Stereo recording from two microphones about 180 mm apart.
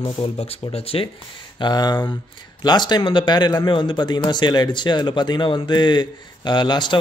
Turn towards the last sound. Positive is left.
turn(degrees=25)  # may be behind; listen again after turning